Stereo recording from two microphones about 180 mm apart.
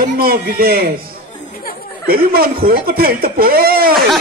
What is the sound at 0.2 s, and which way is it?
Speech, 55° right (ahead or behind).